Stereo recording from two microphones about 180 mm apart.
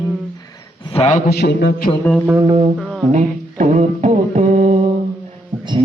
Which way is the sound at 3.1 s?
40° right (ahead or behind).